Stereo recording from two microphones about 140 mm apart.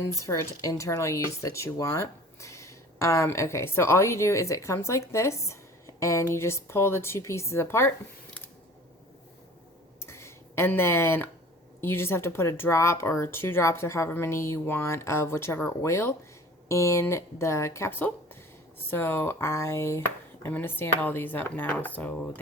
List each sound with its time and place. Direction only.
0.0 s speech: 20° left (ahead or behind)
10.0 s a sound: 20° left (ahead or behind)
11.8 s speech: 15° left (ahead or behind)